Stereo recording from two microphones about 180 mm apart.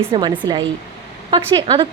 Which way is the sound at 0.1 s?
25° right (ahead or behind).